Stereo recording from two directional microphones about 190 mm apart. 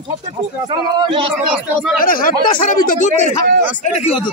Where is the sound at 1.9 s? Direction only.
45° left (ahead or behind).